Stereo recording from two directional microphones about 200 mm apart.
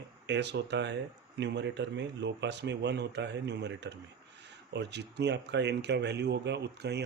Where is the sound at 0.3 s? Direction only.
60° right (ahead or behind).